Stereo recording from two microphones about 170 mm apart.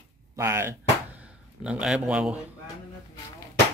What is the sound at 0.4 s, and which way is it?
Music, 15° right (ahead or behind).